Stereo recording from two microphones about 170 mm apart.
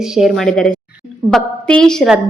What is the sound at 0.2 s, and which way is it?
Speech, centre (ahead or behind).